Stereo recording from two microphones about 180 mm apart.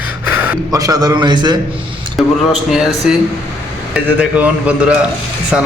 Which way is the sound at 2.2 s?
Centre (ahead or behind).